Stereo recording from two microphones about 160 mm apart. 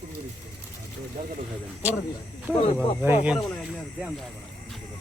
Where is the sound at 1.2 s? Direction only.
55° right (ahead or behind).